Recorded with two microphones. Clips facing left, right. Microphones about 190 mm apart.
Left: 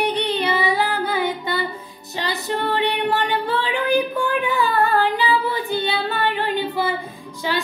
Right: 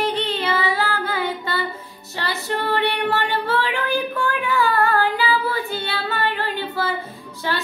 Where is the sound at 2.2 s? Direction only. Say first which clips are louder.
Left 1 dB; 15° left (ahead or behind).